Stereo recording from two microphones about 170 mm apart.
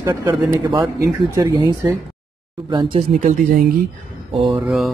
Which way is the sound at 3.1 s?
50° right (ahead or behind).